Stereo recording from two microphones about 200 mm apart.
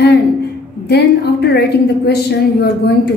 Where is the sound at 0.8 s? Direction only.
55° left (ahead or behind).